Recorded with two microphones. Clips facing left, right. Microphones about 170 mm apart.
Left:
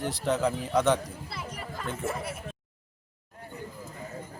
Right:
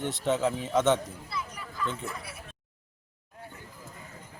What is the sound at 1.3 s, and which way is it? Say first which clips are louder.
Children playing: even; 60° left (ahead or behind).